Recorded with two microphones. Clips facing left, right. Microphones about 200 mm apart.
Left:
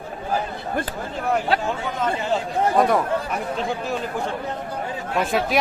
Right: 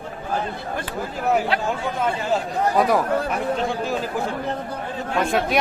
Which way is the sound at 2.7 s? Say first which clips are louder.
Even; centre (ahead or behind).